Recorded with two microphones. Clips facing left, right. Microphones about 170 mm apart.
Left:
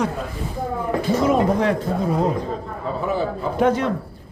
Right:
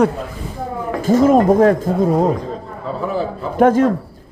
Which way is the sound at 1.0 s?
45° right (ahead or behind).